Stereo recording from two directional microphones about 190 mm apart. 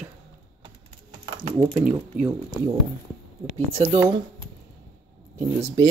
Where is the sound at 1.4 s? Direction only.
10° left (ahead or behind).